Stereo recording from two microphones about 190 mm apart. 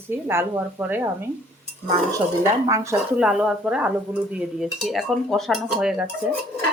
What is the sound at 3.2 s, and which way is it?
Speech, 5° right (ahead or behind).